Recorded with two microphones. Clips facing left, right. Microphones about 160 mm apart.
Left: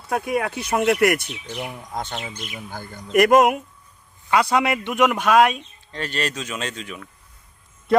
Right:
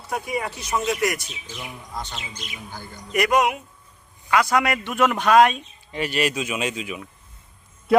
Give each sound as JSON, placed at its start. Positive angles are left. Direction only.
{"t": 0.1, "sound": "speech", "side_deg": 55}
{"t": 4.3, "sound": "a man's voice", "side_deg": 25}
{"t": 5.0, "sound": "speech", "side_deg": 5}
{"t": 5.9, "sound": "speech", "side_deg": -10}